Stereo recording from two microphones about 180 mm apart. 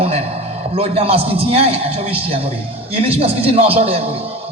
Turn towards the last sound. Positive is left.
turn(degrees=-35)  # may be behind; listen again after turning